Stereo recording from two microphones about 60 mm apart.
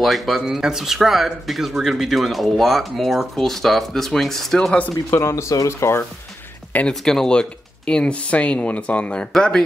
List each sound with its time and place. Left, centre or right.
0.0 s speech: centre
0.5 s speech: centre
4.6 s speech: left
5.1 s speech: left
6.9 s speech: centre